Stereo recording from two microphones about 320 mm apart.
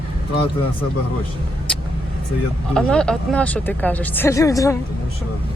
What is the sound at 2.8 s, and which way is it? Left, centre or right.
Speech, centre.